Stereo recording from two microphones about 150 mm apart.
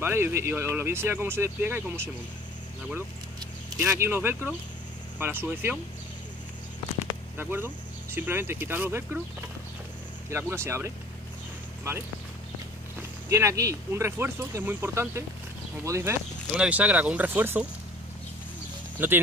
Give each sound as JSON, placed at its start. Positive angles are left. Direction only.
{"t": 0.0, "sound": "speech", "side_deg": -15}
{"t": 3.7, "sound": "speech", "side_deg": -20}
{"t": 7.3, "sound": "speech", "side_deg": -15}
{"t": 10.3, "sound": "speech", "side_deg": -15}
{"t": 13.3, "sound": "speech", "side_deg": -20}
{"t": 19.0, "sound": "speech", "side_deg": -15}